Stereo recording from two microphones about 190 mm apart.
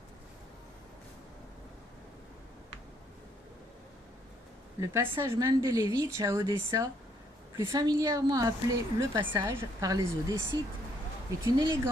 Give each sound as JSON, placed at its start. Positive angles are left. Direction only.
{"t": 4.8, "sound": "a woman's voice", "side_deg": -15}